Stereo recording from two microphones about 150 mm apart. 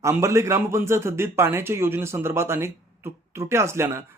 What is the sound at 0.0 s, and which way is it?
Speech, 20° right (ahead or behind).